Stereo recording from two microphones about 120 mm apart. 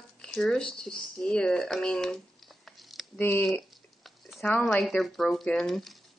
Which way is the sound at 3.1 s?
15° left (ahead or behind).